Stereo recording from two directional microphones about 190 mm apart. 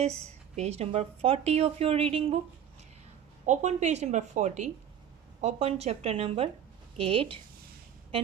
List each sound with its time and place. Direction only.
0.0 s a woman's voice: 35° right (ahead or behind)
3.4 s a woman's voice: 40° right (ahead or behind)